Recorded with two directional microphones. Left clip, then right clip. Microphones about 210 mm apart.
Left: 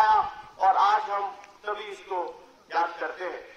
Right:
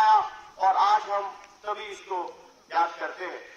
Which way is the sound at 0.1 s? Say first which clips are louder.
Right 1 dB; 20° right (ahead or behind).